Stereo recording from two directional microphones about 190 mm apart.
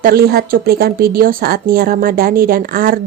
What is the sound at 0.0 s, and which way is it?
A woman's voice, 55° right (ahead or behind).